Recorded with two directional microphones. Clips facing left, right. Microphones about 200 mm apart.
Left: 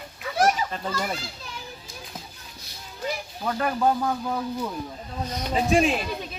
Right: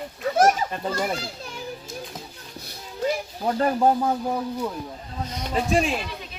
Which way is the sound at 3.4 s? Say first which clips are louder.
Right 3 dB; 30° right (ahead or behind).